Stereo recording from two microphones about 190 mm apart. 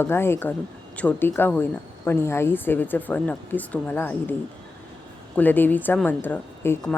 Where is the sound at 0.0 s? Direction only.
10° left (ahead or behind).